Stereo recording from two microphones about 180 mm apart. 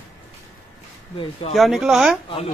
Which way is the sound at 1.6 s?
Centre (ahead or behind).